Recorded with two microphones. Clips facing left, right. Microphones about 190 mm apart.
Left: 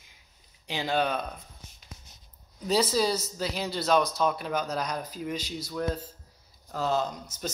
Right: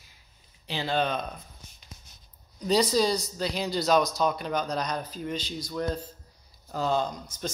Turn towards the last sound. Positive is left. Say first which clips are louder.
# right 1 dB
turn(degrees=10)  # may be behind; listen again after turning